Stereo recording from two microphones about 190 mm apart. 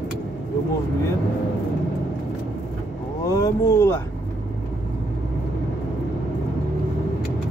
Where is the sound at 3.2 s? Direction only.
15° left (ahead or behind).